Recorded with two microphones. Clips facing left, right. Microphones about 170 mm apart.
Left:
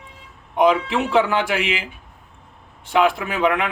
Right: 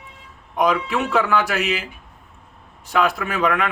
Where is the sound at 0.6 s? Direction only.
25° left (ahead or behind).